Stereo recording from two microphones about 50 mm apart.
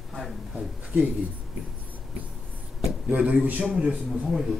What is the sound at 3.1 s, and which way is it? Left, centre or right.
Speech, right.